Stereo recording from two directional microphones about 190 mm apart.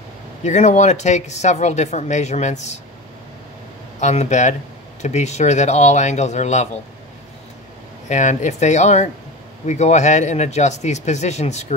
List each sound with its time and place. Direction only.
0.4 s speech: 35° left (ahead or behind)
4.0 s speech: 35° left (ahead or behind)
8.1 s speech: 40° left (ahead or behind)